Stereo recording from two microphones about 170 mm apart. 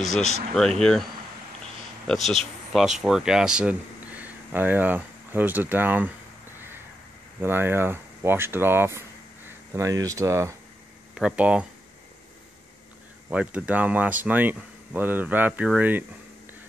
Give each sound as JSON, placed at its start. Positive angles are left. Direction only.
{"t": 0.0, "sound": "speech", "side_deg": 0}
{"t": 2.0, "sound": "speech", "side_deg": 0}
{"t": 7.4, "sound": "speech", "side_deg": -15}
{"t": 11.1, "sound": "speech", "side_deg": -5}
{"t": 13.3, "sound": "speech", "side_deg": -5}